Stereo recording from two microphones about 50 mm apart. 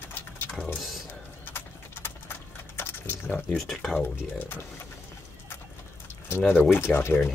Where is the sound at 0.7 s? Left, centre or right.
Centre.